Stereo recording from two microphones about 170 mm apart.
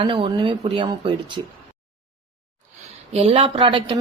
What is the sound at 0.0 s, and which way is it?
Speech, 30° right (ahead or behind).